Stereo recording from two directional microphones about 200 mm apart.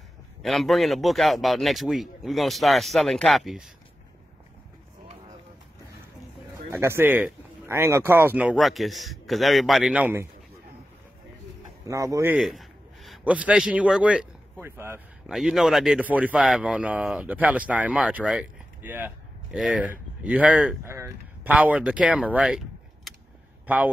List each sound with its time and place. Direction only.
0.4 s speech: centre (ahead or behind)
6.7 s speech: 10° right (ahead or behind)
11.9 s speech: 15° right (ahead or behind)
12.4 s a man's voice: centre (ahead or behind)
15.3 s speech: centre (ahead or behind)
23.7 s speech: 10° right (ahead or behind)